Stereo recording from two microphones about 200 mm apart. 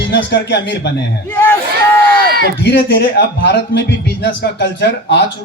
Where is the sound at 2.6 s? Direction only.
55° left (ahead or behind).